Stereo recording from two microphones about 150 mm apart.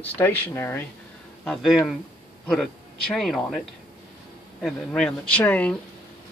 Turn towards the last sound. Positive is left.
turn(degrees=10)  # may be behind; listen again after turning